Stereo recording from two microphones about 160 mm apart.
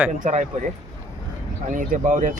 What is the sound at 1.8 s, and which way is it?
Speech, 55° right (ahead or behind).